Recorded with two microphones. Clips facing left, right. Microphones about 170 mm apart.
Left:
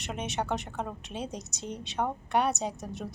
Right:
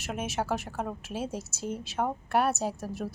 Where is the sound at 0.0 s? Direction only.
5° right (ahead or behind).